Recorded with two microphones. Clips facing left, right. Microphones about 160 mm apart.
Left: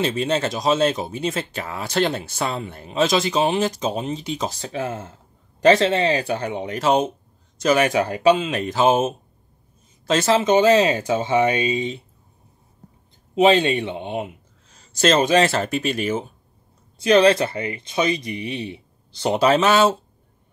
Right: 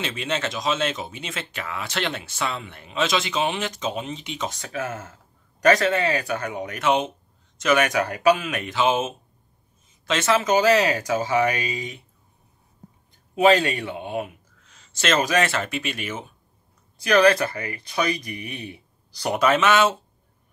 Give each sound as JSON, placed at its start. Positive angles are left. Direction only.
{"t": 0.0, "sound": "speech", "side_deg": 35}
{"t": 13.3, "sound": "speech", "side_deg": 25}
{"t": 14.7, "sound": "speech", "side_deg": 40}